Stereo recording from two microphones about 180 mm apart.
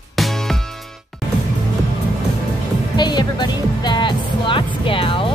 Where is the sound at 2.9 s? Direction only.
25° left (ahead or behind).